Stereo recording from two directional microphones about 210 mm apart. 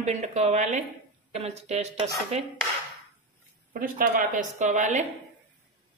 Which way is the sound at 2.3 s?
30° right (ahead or behind).